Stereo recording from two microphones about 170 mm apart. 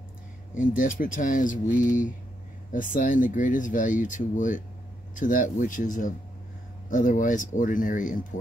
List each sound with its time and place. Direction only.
0.6 s speech: 50° left (ahead or behind)